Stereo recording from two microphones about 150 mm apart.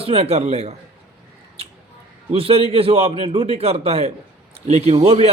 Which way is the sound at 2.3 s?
40° right (ahead or behind).